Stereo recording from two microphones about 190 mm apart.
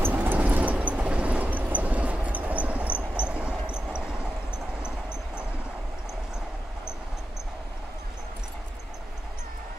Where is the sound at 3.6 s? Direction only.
5° right (ahead or behind).